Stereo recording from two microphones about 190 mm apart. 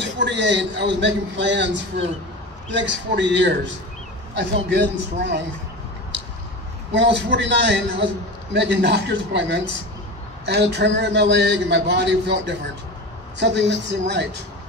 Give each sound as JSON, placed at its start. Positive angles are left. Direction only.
{"t": 0.0, "sound": "a man's voice", "side_deg": -70}
{"t": 6.9, "sound": "a man's voice", "side_deg": -65}
{"t": 13.7, "sound": "a man's voice", "side_deg": -65}